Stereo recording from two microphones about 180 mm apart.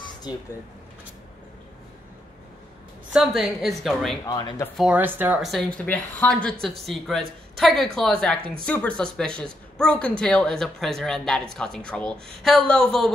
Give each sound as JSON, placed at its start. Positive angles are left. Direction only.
{"t": 3.1, "sound": "speech", "side_deg": -5}
{"t": 4.3, "sound": "speech", "side_deg": 25}
{"t": 4.7, "sound": "speech", "side_deg": -10}